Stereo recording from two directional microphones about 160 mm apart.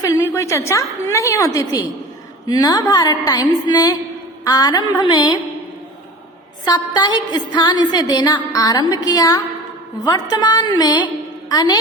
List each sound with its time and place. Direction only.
0.0 s music: 20° left (ahead or behind)
6.7 s music: 25° left (ahead or behind)
11.4 s a woman's voice: 25° left (ahead or behind)